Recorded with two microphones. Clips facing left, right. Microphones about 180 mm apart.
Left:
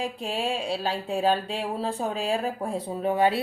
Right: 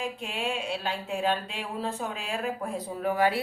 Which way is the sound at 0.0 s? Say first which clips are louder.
Left 3 dB; 35° left (ahead or behind).